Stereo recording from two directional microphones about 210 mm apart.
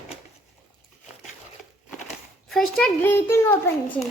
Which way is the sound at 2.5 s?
Centre (ahead or behind).